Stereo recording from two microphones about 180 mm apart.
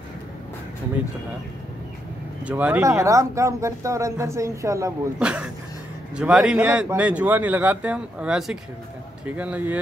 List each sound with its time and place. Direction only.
2.4 s speech: 10° right (ahead or behind)
5.2 s speech: 5° right (ahead or behind)